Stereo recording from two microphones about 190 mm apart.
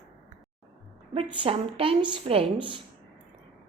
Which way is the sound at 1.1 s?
30° right (ahead or behind).